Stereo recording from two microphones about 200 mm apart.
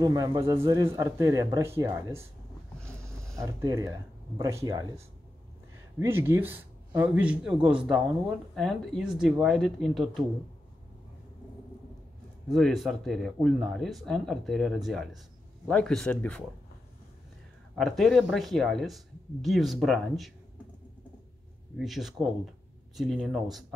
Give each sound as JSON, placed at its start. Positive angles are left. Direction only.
{"t": 0.0, "sound": "a man's voice", "side_deg": -20}
{"t": 2.8, "sound": "a sound", "side_deg": 5}
{"t": 3.3, "sound": "a man's voice", "side_deg": -15}
{"t": 12.5, "sound": "speech", "side_deg": 0}
{"t": 15.7, "sound": "speech", "side_deg": 5}
{"t": 17.7, "sound": "speech", "side_deg": 0}
{"t": 21.7, "sound": "speech", "side_deg": 0}